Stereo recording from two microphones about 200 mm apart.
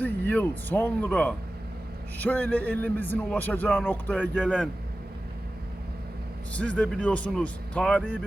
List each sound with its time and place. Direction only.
0.0 s a man's voice: 10° left (ahead or behind)
6.5 s a man's voice: 5° left (ahead or behind)